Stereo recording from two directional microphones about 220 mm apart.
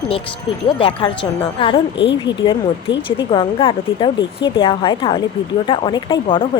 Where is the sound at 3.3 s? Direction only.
25° left (ahead or behind).